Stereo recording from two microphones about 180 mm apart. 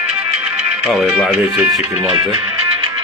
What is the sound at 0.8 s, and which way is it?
Speech, 5° right (ahead or behind).